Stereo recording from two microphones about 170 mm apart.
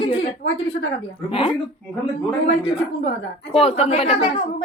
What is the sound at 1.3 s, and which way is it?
Speech, 30° left (ahead or behind).